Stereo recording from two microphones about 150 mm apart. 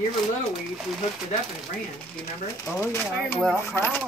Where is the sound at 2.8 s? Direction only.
15° left (ahead or behind).